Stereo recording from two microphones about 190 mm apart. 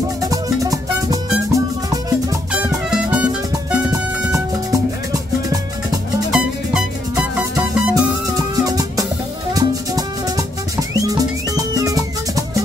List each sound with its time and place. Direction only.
0.2 s music: 20° right (ahead or behind)
2.5 s music: 5° right (ahead or behind)
6.3 s music: 5° right (ahead or behind)
7.9 s music: 20° right (ahead or behind)